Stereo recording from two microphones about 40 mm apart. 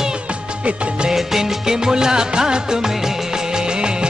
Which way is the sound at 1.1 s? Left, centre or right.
Centre.